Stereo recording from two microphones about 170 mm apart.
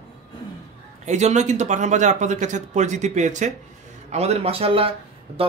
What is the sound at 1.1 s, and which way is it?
Speech, 40° right (ahead or behind).